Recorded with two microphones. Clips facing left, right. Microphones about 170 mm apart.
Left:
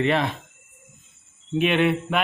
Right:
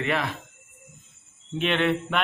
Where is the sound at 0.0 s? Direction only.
25° left (ahead or behind).